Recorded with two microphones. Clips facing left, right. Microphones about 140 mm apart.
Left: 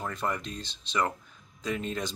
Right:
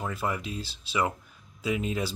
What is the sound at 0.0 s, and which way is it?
Speech, 5° right (ahead or behind).